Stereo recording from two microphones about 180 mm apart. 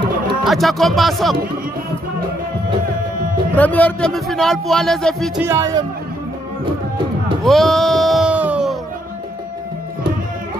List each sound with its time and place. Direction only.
0.4 s a man's voice: centre (ahead or behind)
3.5 s a man's voice: 10° left (ahead or behind)
5.4 s speech: 15° right (ahead or behind)
7.4 s music: centre (ahead or behind)